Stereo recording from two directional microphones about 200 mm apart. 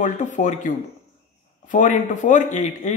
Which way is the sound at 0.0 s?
40° left (ahead or behind).